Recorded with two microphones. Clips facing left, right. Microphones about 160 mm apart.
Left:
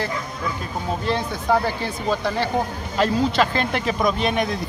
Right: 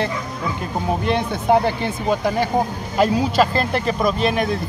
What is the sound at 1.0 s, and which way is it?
Speech, 20° right (ahead or behind).